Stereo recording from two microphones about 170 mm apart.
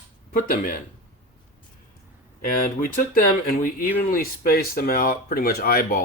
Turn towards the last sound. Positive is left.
turn(degrees=60)  # may be behind; listen again after turning